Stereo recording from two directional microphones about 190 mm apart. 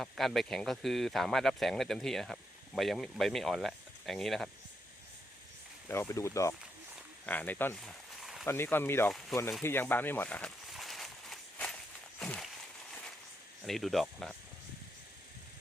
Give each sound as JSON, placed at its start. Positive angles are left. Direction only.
{"t": 0.0, "sound": "speech", "side_deg": 0}
{"t": 5.9, "sound": "speech", "side_deg": 15}
{"t": 8.4, "sound": "speech", "side_deg": 10}
{"t": 9.6, "sound": "a sound", "side_deg": 10}
{"t": 13.7, "sound": "speech", "side_deg": 0}